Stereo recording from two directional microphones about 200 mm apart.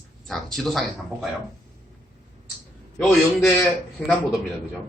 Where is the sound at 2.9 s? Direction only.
5° left (ahead or behind).